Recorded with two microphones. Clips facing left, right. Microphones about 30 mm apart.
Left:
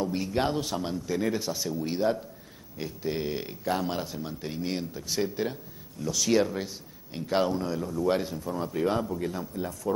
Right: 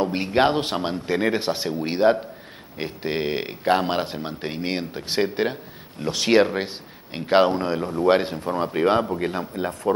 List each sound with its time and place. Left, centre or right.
0.0 s speech: right